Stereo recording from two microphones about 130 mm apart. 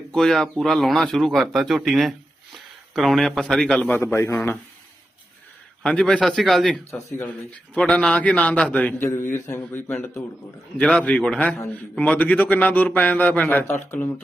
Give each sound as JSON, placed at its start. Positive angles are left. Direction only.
{"t": 0.1, "sound": "a man's voice", "side_deg": 5}
{"t": 5.8, "sound": "a man's voice", "side_deg": 5}